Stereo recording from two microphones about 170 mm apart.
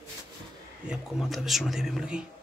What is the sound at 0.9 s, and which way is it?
A man's voice, centre (ahead or behind).